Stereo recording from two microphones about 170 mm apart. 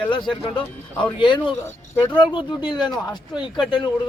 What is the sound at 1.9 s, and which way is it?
Speech, 10° left (ahead or behind).